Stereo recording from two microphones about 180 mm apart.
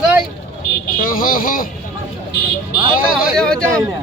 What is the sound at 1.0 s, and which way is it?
Speech, 50° left (ahead or behind).